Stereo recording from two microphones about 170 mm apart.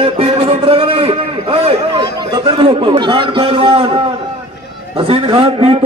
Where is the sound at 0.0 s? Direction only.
35° right (ahead or behind).